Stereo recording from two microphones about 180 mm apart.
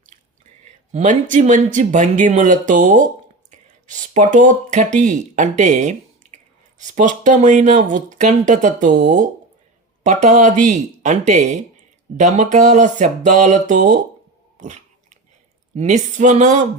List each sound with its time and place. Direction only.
0.6 s speech: 45° right (ahead or behind)
14.6 s biting: 40° right (ahead or behind)
15.7 s speech: 40° right (ahead or behind)